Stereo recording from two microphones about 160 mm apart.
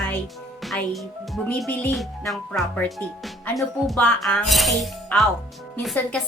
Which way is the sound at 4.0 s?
10° left (ahead or behind).